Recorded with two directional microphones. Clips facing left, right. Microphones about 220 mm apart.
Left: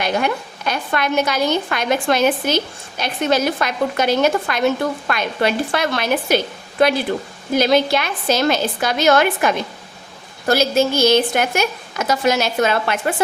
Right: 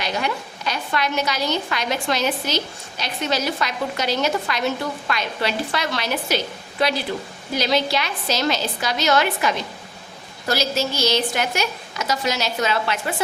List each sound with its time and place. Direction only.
0.0 s a woman's voice: 55° left (ahead or behind)